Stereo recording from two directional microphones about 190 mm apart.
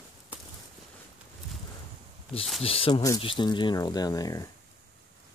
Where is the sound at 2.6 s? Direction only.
30° left (ahead or behind).